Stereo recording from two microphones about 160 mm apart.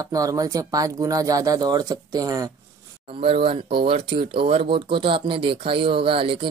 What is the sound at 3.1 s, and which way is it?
Speech, 35° right (ahead or behind).